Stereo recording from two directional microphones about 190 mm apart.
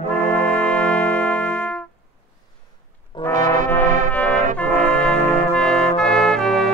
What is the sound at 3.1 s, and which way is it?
Brass instrument, 25° left (ahead or behind).